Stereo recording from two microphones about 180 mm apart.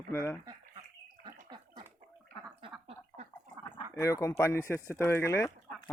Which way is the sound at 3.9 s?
15° left (ahead or behind).